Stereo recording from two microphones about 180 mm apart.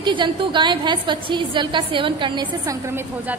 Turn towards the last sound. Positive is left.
turn(degrees=-15)  # may be behind; listen again after turning